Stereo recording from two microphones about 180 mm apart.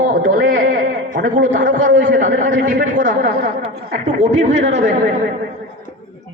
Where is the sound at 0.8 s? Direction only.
45° right (ahead or behind).